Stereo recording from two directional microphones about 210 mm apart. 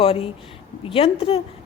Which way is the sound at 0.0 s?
25° left (ahead or behind).